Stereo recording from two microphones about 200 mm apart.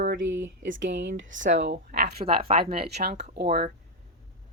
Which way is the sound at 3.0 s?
55° right (ahead or behind).